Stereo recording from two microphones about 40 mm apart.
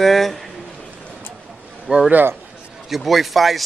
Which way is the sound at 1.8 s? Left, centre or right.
Right.